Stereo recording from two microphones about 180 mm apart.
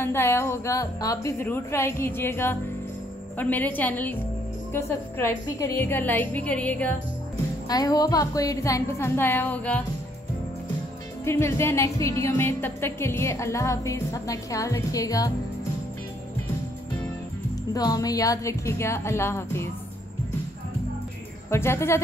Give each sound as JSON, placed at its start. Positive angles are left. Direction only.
{"t": 0.0, "sound": "speech", "side_deg": 15}
{"t": 7.6, "sound": "speech", "side_deg": 20}
{"t": 11.2, "sound": "speech", "side_deg": 15}
{"t": 17.7, "sound": "speech", "side_deg": 20}
{"t": 21.5, "sound": "speech", "side_deg": 15}